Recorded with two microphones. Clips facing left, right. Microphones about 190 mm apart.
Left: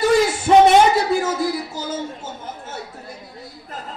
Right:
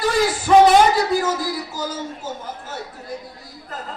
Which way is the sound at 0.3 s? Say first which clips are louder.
Right 4 dB; 25° left (ahead or behind).